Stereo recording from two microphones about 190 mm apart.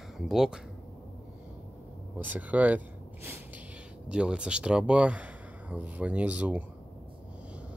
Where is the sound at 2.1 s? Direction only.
10° right (ahead or behind).